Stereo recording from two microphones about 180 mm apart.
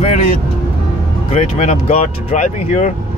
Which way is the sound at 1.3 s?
35° left (ahead or behind).